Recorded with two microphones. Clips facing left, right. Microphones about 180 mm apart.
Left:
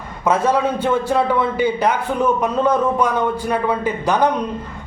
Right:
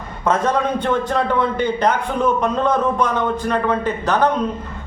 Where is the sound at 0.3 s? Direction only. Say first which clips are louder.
Left 1 dB; 10° left (ahead or behind).